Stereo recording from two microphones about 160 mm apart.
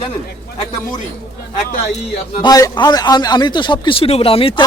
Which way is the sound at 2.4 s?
25° left (ahead or behind).